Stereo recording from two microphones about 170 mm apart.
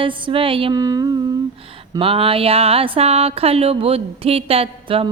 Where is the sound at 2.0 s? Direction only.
30° right (ahead or behind).